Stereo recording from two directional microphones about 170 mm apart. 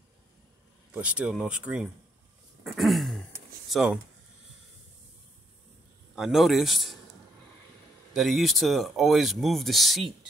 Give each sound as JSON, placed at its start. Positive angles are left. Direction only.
{"t": 0.9, "sound": "speech", "side_deg": -5}
{"t": 6.1, "sound": "speech", "side_deg": 0}
{"t": 8.1, "sound": "speech", "side_deg": 0}